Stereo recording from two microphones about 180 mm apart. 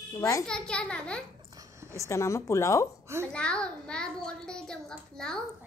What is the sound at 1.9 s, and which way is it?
Speech, 15° left (ahead or behind).